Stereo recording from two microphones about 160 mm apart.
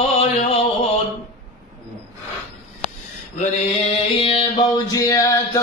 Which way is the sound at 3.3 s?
40° left (ahead or behind).